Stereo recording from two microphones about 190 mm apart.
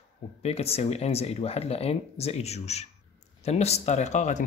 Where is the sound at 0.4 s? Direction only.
35° left (ahead or behind).